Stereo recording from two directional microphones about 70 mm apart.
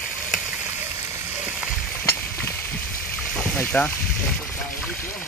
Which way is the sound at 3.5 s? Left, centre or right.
Left.